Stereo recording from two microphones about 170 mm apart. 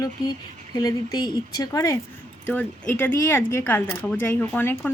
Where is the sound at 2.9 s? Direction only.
10° left (ahead or behind).